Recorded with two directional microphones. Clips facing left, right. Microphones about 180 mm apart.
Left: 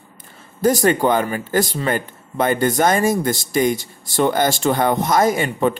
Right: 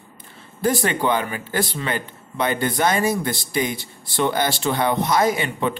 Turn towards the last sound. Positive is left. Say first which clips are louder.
# left 4 dB
turn(degrees=45)  # may be behind; listen again after turning